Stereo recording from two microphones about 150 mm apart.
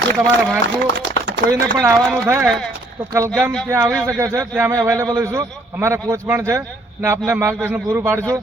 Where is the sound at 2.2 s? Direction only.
15° right (ahead or behind).